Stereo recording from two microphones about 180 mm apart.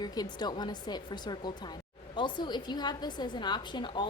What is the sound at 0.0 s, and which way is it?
A woman's voice, 25° left (ahead or behind).